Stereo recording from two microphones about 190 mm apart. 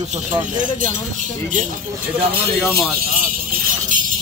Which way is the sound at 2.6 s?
Centre (ahead or behind).